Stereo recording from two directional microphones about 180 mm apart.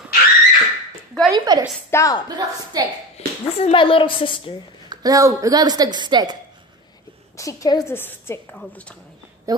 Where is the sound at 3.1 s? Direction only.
35° left (ahead or behind).